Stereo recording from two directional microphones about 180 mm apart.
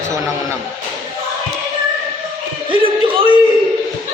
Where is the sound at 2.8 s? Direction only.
30° right (ahead or behind).